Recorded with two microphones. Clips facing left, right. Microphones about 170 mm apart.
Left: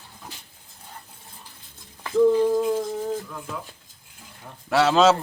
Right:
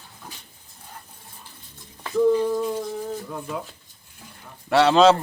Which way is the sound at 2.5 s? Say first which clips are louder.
Left 3 dB; 20° left (ahead or behind).